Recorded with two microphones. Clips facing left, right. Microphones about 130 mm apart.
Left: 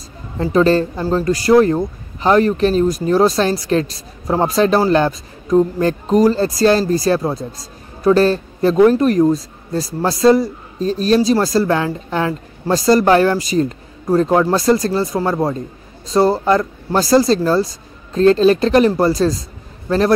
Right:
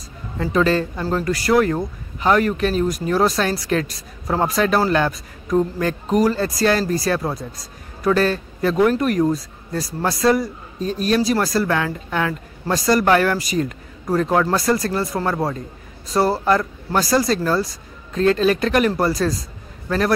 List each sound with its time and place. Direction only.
0.4 s a woman's voice: 35° left (ahead or behind)